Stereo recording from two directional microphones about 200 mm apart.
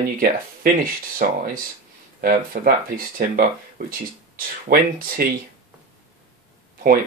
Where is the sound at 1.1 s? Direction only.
45° right (ahead or behind).